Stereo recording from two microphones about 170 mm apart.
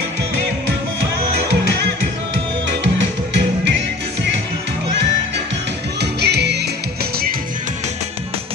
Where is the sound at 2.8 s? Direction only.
90° right.